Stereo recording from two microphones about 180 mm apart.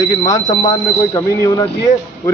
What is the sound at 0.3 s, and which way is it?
A man's voice, 20° left (ahead or behind).